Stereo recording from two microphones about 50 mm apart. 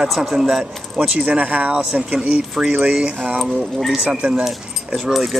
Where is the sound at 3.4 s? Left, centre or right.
Centre.